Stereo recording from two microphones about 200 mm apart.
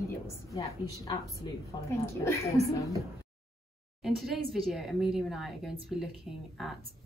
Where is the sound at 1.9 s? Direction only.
15° left (ahead or behind).